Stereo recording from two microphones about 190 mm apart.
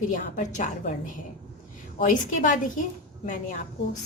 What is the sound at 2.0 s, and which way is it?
A woman's voice, 45° left (ahead or behind).